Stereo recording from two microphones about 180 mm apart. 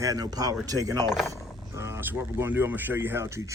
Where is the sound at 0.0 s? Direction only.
20° right (ahead or behind).